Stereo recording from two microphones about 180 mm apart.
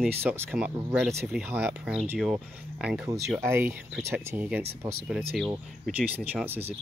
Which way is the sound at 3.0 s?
15° right (ahead or behind).